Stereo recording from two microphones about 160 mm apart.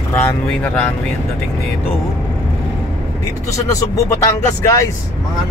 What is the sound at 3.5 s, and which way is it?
Speech, 20° left (ahead or behind).